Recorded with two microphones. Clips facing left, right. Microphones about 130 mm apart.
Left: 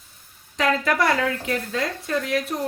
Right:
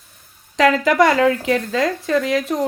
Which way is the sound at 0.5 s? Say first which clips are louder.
Right 7 dB; 90° right.